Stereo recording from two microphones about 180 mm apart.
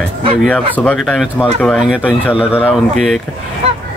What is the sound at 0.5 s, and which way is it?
Speech, 10° left (ahead or behind).